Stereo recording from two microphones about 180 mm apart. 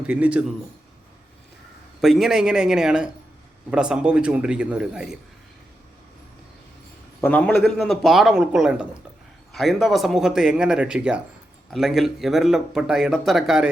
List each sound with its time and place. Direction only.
0.0 s a man's voice: 5° right (ahead or behind)
2.0 s speech: centre (ahead or behind)
7.2 s speech: 10° left (ahead or behind)